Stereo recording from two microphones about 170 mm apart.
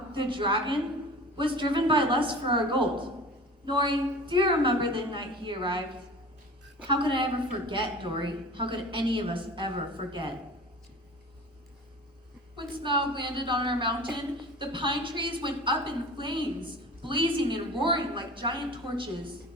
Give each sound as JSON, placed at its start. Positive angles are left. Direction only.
{"t": 0.1, "sound": "a woman's voice", "side_deg": -30}
{"t": 6.8, "sound": "a woman's voice", "side_deg": -30}
{"t": 12.5, "sound": "a woman's voice", "side_deg": -30}